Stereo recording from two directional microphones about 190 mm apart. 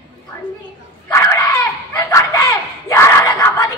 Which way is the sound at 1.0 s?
15° left (ahead or behind).